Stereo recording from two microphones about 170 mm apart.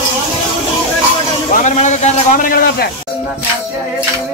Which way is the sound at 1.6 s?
45° left (ahead or behind).